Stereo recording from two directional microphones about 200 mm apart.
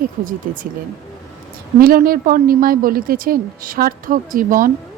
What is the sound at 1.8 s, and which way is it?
A woman's voice, 50° right (ahead or behind).